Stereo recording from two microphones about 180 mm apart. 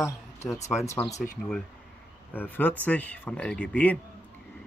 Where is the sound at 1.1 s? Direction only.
50° left (ahead or behind).